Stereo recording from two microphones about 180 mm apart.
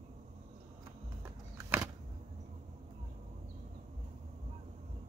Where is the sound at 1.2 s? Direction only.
15° right (ahead or behind).